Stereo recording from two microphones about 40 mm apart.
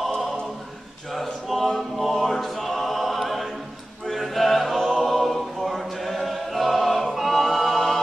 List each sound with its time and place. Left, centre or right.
0.0 s choir: centre
1.5 s choir: centre
4.1 s music: centre
7.2 s choir: centre